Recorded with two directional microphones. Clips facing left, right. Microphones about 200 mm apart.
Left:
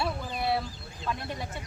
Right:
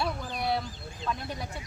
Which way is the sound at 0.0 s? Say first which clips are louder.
Left 1 dB; centre (ahead or behind).